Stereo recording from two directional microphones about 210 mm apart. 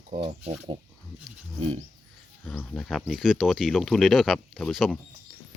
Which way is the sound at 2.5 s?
5° left (ahead or behind).